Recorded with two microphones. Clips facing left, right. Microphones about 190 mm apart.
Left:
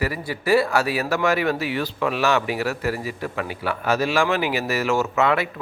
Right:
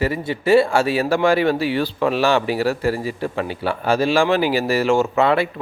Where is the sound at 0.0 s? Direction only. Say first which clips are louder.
Right 5 dB; 25° right (ahead or behind).